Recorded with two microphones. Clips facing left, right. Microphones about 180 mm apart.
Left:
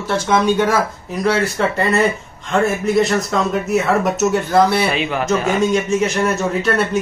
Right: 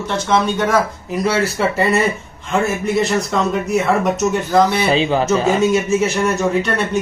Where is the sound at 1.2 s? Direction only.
5° right (ahead or behind).